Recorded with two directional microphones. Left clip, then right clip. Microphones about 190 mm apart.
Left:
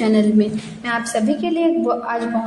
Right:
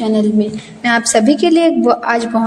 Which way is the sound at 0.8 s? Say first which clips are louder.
Right 8 dB; 25° right (ahead or behind).